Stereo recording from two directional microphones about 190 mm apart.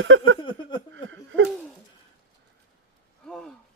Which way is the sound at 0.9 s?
85° right.